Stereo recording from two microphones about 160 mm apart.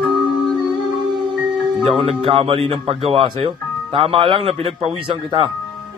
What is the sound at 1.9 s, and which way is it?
A man's voice, 35° right (ahead or behind).